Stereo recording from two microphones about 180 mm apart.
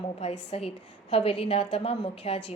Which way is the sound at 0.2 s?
35° left (ahead or behind).